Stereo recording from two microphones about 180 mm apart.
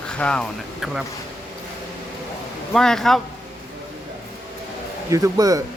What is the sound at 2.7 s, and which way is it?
Speech, 5° left (ahead or behind).